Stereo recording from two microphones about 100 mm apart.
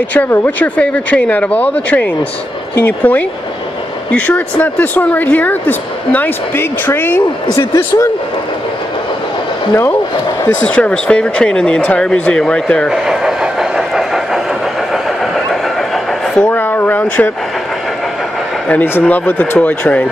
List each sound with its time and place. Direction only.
0.3 s speech: 15° left (ahead or behind)
7.5 s a man's voice: 30° left (ahead or behind)
10.6 s speech: 10° left (ahead or behind)
12.9 s train: 5° right (ahead or behind)
15.9 s vehicle: 10° left (ahead or behind)
16.5 s speech: 20° left (ahead or behind)
18.7 s speech: 15° left (ahead or behind)